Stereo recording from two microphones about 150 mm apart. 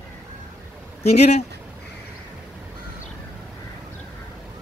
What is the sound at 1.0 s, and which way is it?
Speech, 45° left (ahead or behind).